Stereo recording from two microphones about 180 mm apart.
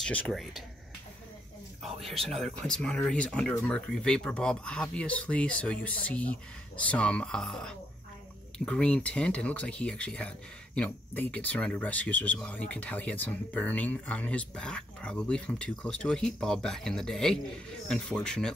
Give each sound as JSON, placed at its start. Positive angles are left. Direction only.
{"t": 0.0, "sound": "speech", "side_deg": 5}
{"t": 2.0, "sound": "speech", "side_deg": 0}